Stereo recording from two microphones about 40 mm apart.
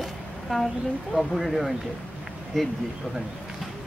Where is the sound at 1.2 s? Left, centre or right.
Centre.